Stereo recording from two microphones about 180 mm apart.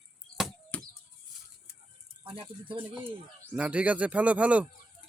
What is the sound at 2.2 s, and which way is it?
Speech, 30° right (ahead or behind).